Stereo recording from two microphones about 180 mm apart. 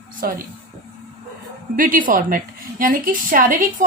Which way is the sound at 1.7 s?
50° right (ahead or behind).